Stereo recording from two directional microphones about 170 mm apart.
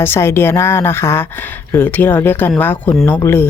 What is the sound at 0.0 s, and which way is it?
Speech, 15° left (ahead or behind).